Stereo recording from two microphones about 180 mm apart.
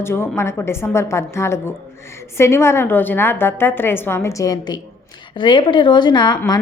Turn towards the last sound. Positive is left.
turn(degrees=25)  # may be behind; listen again after turning